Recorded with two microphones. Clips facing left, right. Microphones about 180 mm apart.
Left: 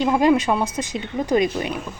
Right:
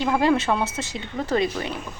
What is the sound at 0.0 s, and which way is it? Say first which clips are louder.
A woman's voice: left 3 dB; 15° left (ahead or behind).